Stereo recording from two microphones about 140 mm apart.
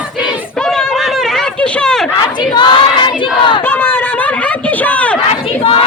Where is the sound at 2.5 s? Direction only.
35° left (ahead or behind).